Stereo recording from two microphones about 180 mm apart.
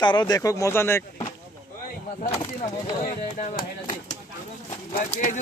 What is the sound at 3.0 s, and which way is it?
Speech, 45° left (ahead or behind).